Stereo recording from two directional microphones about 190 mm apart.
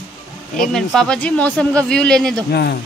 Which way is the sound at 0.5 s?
Centre (ahead or behind).